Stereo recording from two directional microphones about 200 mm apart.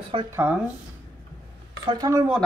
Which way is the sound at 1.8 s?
20° right (ahead or behind).